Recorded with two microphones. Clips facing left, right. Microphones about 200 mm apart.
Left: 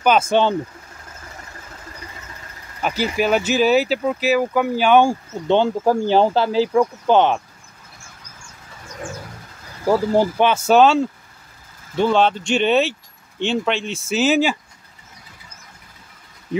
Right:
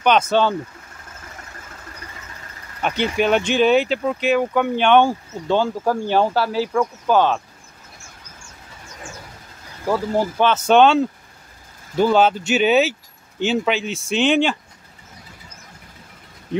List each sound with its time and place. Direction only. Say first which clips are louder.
0.0 s speech: left 1 dB; 5° left (ahead or behind)
2.8 s speech: right 1 dB; 5° left (ahead or behind)
5.5 s speech: left 3 dB; 20° left (ahead or behind)
10.3 s speech: even; 10° left (ahead or behind)